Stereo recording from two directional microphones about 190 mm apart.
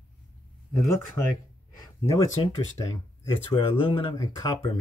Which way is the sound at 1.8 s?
15° left (ahead or behind).